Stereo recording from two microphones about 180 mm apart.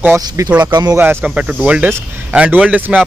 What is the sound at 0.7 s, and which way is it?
Speech, 20° right (ahead or behind).